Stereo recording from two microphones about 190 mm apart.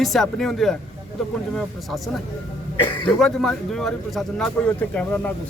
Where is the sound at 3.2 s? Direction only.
Centre (ahead or behind).